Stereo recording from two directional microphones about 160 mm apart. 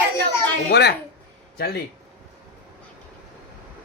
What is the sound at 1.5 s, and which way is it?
Speech, 75° left (ahead or behind).